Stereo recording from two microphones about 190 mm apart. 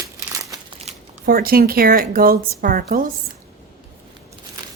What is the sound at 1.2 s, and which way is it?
Speech, 50° right (ahead or behind).